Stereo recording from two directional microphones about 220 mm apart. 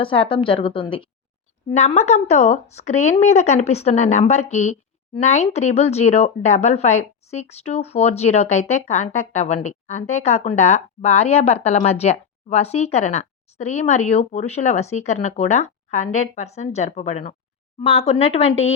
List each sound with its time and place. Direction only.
0.0 s speech: 25° left (ahead or behind)